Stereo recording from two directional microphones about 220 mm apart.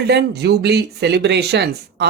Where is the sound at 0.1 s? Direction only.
50° right (ahead or behind).